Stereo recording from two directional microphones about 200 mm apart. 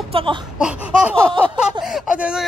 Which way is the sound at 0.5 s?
5° right (ahead or behind).